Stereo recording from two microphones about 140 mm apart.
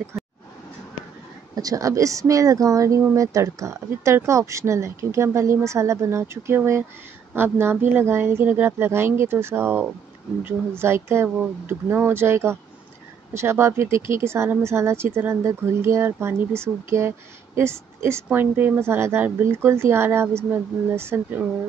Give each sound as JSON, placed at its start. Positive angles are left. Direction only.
{"t": 1.5, "sound": "speech", "side_deg": -25}